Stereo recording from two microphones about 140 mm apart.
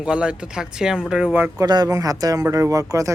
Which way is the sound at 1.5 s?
30° right (ahead or behind).